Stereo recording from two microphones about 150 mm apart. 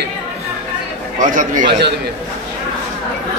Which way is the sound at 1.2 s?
60° right (ahead or behind).